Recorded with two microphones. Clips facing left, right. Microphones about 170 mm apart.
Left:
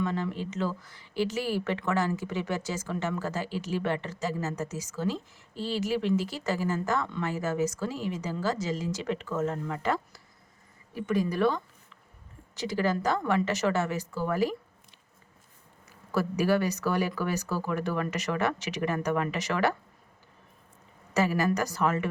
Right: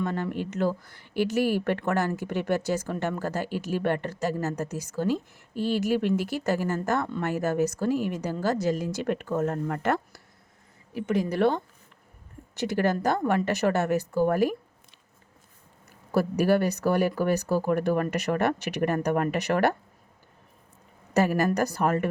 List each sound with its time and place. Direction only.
0.0 s speech: 55° right (ahead or behind)
15.9 s speech: 60° right (ahead or behind)
21.1 s speech: 55° right (ahead or behind)